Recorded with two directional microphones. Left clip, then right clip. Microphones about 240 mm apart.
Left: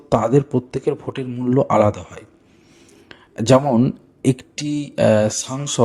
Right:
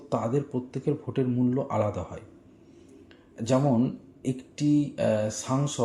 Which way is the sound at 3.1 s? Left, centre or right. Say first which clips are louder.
Left 12 dB; left.